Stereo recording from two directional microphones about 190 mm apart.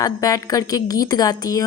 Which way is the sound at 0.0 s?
20° left (ahead or behind).